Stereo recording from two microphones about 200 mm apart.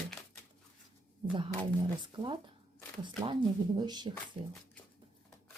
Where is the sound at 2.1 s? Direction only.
25° right (ahead or behind).